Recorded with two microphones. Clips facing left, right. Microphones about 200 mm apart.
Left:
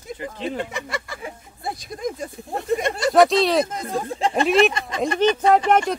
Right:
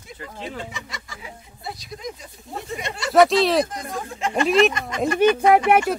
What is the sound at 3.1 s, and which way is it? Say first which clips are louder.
Speech: right 1 dB; centre (ahead or behind).